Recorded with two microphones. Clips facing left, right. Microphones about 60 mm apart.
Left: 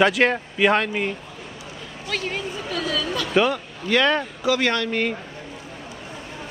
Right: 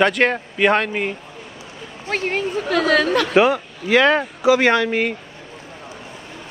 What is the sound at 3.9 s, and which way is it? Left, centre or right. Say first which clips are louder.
Speech: right 5 dB; centre.